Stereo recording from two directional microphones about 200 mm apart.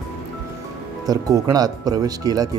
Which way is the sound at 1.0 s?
20° right (ahead or behind).